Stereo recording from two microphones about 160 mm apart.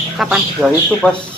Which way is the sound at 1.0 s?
5° left (ahead or behind).